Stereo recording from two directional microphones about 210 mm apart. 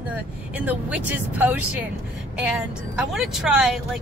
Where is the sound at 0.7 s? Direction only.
5° right (ahead or behind).